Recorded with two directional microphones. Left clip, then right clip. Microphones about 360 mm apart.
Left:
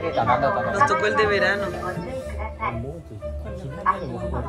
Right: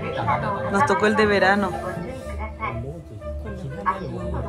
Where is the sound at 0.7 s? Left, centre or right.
Centre.